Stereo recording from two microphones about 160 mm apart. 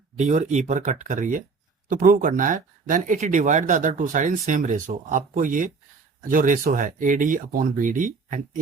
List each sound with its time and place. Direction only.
0.2 s speech: 50° right (ahead or behind)